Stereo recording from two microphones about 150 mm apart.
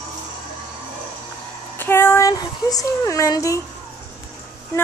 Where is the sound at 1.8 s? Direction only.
15° left (ahead or behind).